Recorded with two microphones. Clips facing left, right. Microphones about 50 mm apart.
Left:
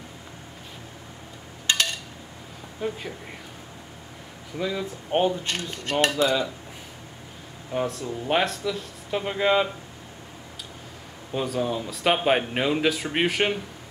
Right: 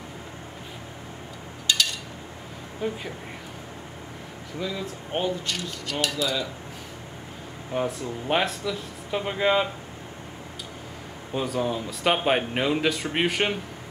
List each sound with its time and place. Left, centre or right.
1.7 s a sound: left
2.8 s speech: centre
4.6 s speech: centre
5.1 s speech: left
5.5 s cutlery: left
7.7 s speech: centre
11.3 s speech: centre